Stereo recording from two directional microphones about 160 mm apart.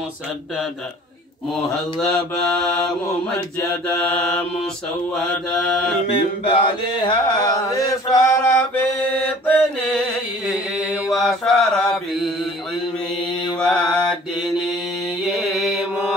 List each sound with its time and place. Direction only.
2.0 s mantra: centre (ahead or behind)
6.0 s chant: 35° left (ahead or behind); by 10.0 s 10° left (ahead or behind)
10.8 s mantra: centre (ahead or behind)
13.6 s mantra: 5° left (ahead or behind)
15.2 s mantra: centre (ahead or behind)